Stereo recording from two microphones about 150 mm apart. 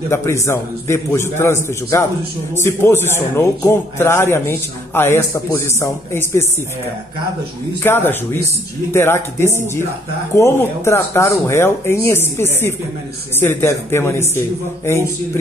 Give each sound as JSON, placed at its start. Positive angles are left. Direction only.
{"t": 0.1, "sound": "a man's voice", "side_deg": 20}
{"t": 7.8, "sound": "a man's voice", "side_deg": 15}